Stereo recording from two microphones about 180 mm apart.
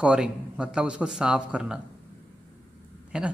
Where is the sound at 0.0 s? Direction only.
5° right (ahead or behind).